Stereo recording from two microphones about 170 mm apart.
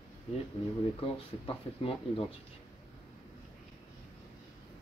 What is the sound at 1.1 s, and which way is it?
Speech, 35° left (ahead or behind).